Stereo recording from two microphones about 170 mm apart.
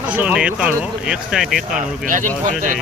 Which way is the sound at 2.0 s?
50° right (ahead or behind).